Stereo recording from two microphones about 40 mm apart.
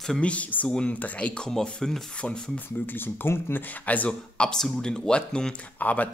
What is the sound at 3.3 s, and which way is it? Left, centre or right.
Speech, left.